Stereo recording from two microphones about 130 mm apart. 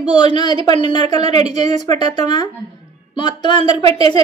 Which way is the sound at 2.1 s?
35° left (ahead or behind).